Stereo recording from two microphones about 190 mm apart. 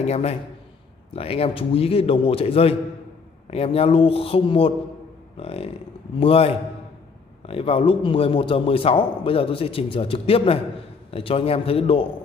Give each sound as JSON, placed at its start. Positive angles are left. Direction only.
{"t": 0.0, "sound": "a man's voice", "side_deg": 35}